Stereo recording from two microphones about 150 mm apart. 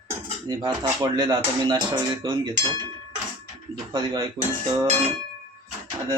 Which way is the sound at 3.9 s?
30° right (ahead or behind).